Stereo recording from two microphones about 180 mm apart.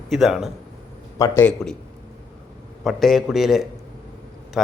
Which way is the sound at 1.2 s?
20° left (ahead or behind).